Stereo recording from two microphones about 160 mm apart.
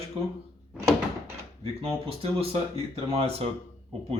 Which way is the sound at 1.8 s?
35° right (ahead or behind).